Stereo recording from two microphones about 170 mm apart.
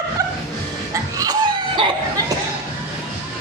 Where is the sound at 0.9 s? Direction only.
20° right (ahead or behind).